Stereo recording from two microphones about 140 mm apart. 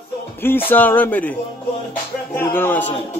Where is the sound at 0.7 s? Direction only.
15° left (ahead or behind).